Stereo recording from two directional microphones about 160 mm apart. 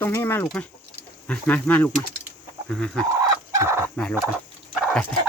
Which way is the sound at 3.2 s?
15° right (ahead or behind).